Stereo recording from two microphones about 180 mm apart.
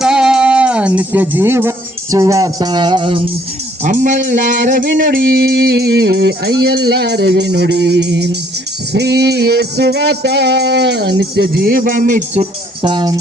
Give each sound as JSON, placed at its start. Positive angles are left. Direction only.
{"t": 0.0, "sound": "music", "side_deg": -5}
{"t": 3.8, "sound": "a sound", "side_deg": -45}
{"t": 8.9, "sound": "music", "side_deg": -70}